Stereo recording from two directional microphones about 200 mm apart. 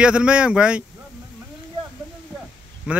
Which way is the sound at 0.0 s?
5° right (ahead or behind).